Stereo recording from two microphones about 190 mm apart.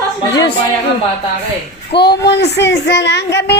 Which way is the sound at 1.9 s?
60° left (ahead or behind).